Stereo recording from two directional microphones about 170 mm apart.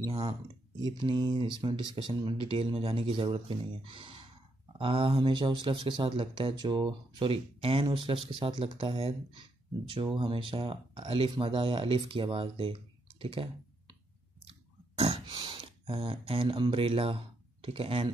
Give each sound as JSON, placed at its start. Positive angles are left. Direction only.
{"t": 0.9, "sound": "speech", "side_deg": -25}
{"t": 13.2, "sound": "clicking", "side_deg": -30}
{"t": 15.0, "sound": "speech", "side_deg": -35}